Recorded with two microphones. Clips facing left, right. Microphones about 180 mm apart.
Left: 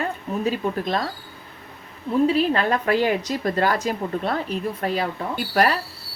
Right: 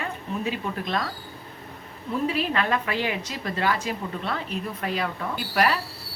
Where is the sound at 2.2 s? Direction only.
30° left (ahead or behind).